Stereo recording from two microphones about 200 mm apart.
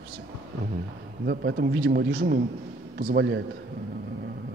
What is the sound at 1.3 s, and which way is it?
A man's voice, 55° right (ahead or behind).